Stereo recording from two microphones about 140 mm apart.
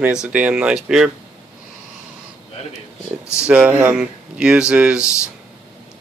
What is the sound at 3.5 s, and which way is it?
Speech, 10° right (ahead or behind).